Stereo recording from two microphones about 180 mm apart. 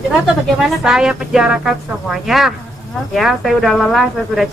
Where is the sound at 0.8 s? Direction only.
5° right (ahead or behind).